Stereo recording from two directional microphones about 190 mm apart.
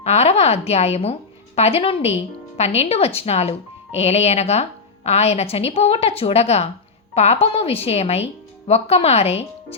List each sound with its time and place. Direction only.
0.0 s speech: 35° left (ahead or behind)